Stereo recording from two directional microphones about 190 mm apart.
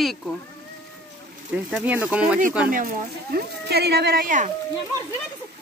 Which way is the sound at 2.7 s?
45° right (ahead or behind).